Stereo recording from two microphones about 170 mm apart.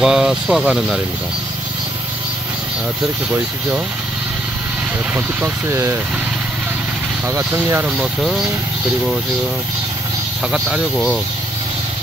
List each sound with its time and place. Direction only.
0.0 s speech: 5° right (ahead or behind)
5.1 s speech: 15° right (ahead or behind)
7.2 s speech: 15° right (ahead or behind); by 8.5 s centre (ahead or behind)
10.5 s speech: centre (ahead or behind)